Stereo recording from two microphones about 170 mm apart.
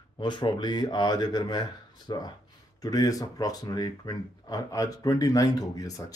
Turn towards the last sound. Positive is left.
turn(degrees=20)  # may be behind; listen again after turning